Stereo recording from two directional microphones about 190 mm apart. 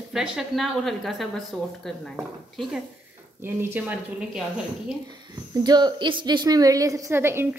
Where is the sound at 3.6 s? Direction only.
10° right (ahead or behind).